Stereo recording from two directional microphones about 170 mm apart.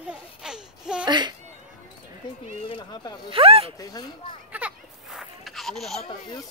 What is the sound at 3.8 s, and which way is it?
Speech, 20° left (ahead or behind).